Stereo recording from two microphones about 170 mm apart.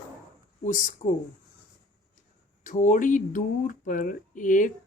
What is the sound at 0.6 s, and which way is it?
Speech, 45° left (ahead or behind).